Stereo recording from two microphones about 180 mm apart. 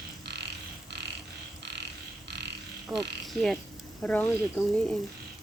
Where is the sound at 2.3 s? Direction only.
75° right (ahead or behind).